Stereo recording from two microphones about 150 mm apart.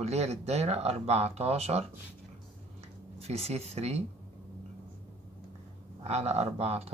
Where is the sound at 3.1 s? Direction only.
45° right (ahead or behind).